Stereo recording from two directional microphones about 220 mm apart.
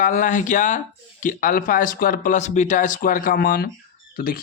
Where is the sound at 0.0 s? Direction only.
35° left (ahead or behind).